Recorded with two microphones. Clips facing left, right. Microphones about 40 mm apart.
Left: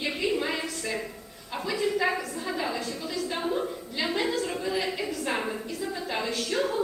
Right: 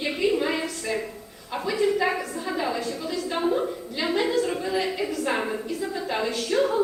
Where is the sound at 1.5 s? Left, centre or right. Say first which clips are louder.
Right 4 dB; centre.